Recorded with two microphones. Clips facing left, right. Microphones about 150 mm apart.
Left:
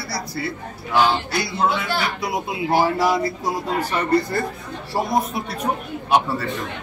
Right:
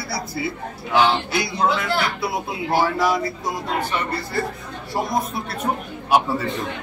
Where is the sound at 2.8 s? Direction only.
25° left (ahead or behind).